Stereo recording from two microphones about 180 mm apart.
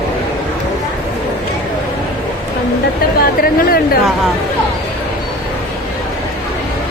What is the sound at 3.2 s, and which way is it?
Speech, 55° left (ahead or behind).